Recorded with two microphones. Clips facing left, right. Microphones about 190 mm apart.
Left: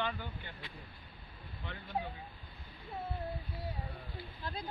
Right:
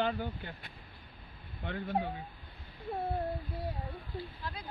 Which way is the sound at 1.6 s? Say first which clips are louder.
Right 10 dB; 55° right (ahead or behind).